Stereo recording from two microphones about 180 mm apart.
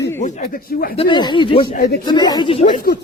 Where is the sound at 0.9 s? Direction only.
30° left (ahead or behind).